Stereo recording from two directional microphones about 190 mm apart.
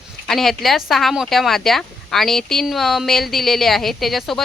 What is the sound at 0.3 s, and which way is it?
Speech, centre (ahead or behind).